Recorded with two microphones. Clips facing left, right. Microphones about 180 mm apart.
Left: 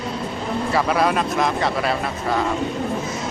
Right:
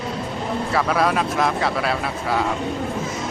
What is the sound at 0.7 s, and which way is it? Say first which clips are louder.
Speech: left 1 dB; centre (ahead or behind).